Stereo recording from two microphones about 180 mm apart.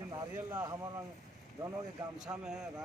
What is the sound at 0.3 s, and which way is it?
Speech, 15° right (ahead or behind).